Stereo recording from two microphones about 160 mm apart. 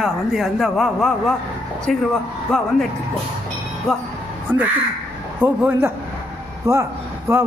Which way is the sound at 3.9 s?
Centre (ahead or behind).